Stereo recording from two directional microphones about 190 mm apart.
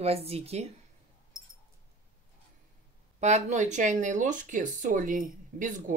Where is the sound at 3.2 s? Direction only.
40° right (ahead or behind).